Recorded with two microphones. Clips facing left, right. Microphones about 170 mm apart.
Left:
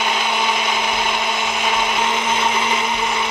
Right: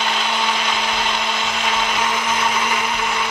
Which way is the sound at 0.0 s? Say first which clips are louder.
Left 1 dB; 15° left (ahead or behind).